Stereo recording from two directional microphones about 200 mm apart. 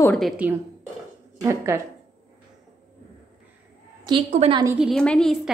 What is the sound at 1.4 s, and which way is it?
Speech, 15° right (ahead or behind).